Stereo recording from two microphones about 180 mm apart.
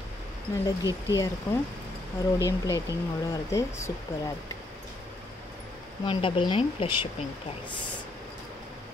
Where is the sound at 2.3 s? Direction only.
20° left (ahead or behind).